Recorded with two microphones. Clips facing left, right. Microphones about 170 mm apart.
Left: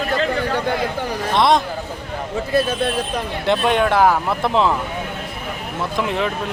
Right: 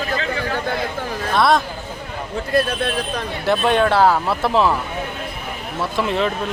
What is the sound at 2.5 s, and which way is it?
Speech, centre (ahead or behind).